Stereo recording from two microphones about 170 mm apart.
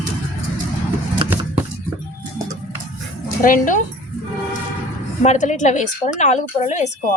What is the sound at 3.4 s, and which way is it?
Speech, 50° left (ahead or behind).